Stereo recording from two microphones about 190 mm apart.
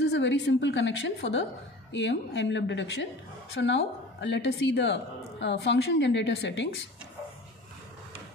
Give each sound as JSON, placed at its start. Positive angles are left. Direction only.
{"t": 0.1, "sound": "a woman's voice", "side_deg": 70}